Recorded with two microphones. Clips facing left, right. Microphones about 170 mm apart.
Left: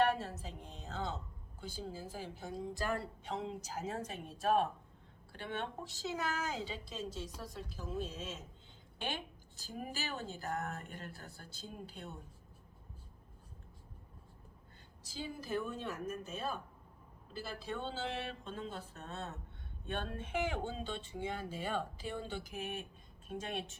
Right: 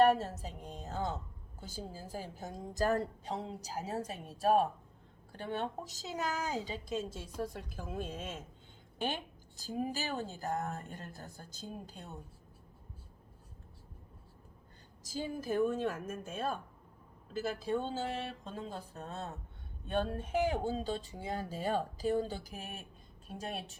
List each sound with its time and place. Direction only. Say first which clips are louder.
0.2 s a woman's voice: right 3 dB; 40° right (ahead or behind)
9.0 s speech: right 4 dB; 45° right (ahead or behind)
15.0 s a woman's voice: right 6 dB; 45° right (ahead or behind)